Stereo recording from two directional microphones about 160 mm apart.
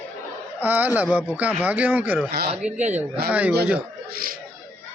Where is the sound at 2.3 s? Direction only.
90° right.